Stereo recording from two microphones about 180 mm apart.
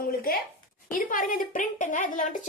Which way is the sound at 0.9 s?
50° left (ahead or behind).